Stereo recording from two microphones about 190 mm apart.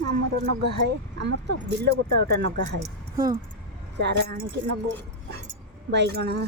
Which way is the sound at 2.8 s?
20° right (ahead or behind).